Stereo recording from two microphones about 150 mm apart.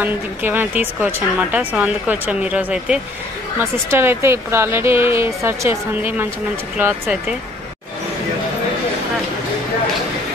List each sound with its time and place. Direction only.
0.0 s speech: 15° right (ahead or behind)